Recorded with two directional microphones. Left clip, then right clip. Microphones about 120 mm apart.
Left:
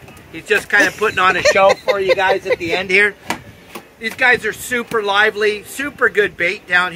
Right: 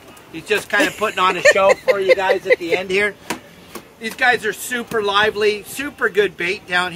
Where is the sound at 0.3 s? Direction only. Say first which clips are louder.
Left 4 dB; 45° right (ahead or behind).